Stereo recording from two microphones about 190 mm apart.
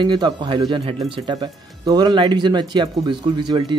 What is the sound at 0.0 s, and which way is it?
Speech, 20° right (ahead or behind).